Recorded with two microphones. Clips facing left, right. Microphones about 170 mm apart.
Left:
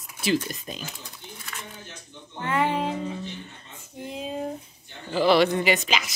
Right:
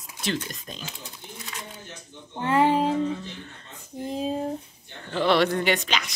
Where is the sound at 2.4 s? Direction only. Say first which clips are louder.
Right 4 dB; 35° right (ahead or behind).